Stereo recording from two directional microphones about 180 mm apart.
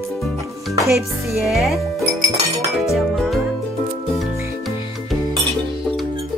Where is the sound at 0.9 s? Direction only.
Centre (ahead or behind).